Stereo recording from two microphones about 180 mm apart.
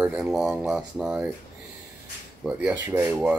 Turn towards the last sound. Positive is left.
turn(degrees=-10)  # may be behind; listen again after turning